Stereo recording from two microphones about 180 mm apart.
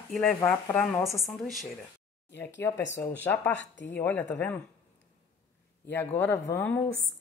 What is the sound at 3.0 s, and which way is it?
Speech, 10° left (ahead or behind).